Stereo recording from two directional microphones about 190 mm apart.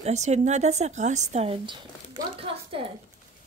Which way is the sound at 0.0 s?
35° right (ahead or behind).